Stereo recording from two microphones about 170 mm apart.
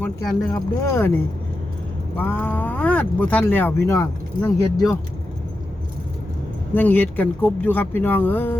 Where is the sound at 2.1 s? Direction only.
10° left (ahead or behind).